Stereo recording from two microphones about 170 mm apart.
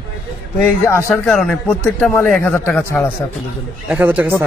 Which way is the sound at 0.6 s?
15° left (ahead or behind).